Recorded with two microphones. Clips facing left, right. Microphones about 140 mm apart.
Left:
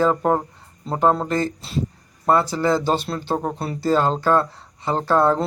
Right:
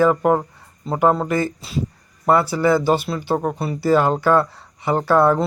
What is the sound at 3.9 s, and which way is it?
Speech, 15° right (ahead or behind).